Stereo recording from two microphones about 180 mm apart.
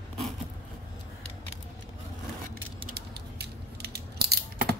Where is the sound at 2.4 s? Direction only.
55° right (ahead or behind).